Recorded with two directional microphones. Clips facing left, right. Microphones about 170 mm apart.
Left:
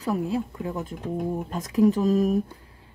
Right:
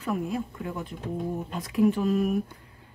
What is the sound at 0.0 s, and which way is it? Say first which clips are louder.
Speech: left 3 dB; 35° left (ahead or behind).